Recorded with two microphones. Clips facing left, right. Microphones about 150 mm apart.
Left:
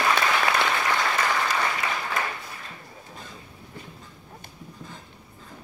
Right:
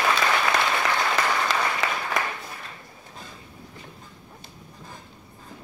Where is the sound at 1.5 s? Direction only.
90° right.